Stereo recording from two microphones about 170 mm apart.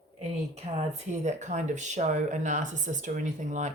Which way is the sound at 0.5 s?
40° right (ahead or behind).